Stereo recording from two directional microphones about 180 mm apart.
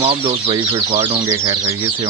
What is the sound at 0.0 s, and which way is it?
Speech, 30° right (ahead or behind).